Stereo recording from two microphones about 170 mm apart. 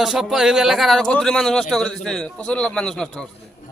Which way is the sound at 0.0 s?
5° right (ahead or behind).